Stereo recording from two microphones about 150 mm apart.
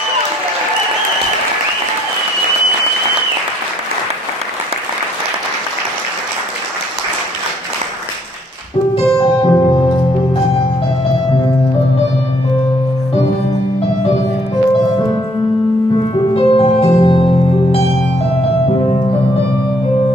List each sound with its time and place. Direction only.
9.2 s music: 30° left (ahead or behind)
16.3 s music: 40° left (ahead or behind)